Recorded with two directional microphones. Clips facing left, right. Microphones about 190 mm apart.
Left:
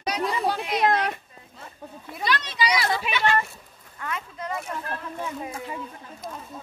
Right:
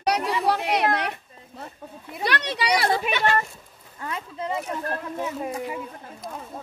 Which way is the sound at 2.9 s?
50° right (ahead or behind).